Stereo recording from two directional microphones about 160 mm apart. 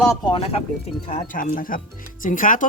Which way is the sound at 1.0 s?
55° left (ahead or behind).